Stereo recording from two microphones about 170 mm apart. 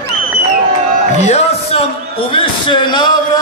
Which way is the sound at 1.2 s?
40° left (ahead or behind).